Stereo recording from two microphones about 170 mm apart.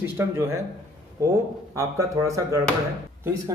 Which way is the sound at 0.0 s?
15° right (ahead or behind).